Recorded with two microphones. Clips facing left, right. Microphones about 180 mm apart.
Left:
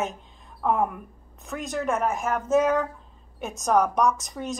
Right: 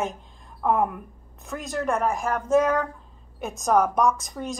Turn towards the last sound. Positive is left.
turn(degrees=0)  # may be behind; listen again after turning